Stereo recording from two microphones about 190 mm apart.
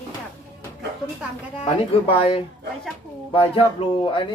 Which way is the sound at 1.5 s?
30° left (ahead or behind).